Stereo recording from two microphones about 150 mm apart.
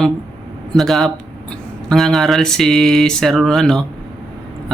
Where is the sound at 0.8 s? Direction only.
Centre (ahead or behind).